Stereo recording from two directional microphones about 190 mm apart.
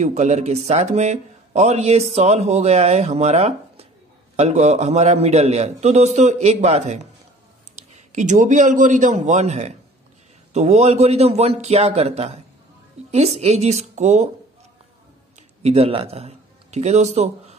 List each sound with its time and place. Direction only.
0.0 s a man's voice: 40° right (ahead or behind)
15.6 s a man's voice: 30° right (ahead or behind)